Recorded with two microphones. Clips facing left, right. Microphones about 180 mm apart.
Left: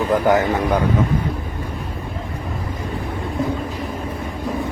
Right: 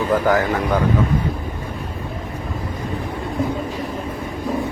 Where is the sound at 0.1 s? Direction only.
20° left (ahead or behind).